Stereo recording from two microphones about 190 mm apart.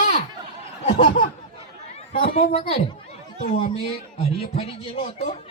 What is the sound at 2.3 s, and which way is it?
Speech, 30° left (ahead or behind).